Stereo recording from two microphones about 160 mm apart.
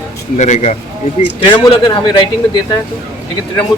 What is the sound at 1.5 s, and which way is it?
Speech, 30° left (ahead or behind).